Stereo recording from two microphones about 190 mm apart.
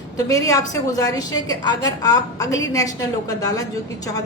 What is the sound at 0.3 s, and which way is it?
A woman's voice, 15° left (ahead or behind).